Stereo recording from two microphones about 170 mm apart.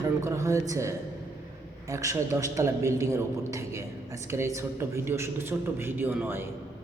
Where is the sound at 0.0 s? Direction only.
15° right (ahead or behind).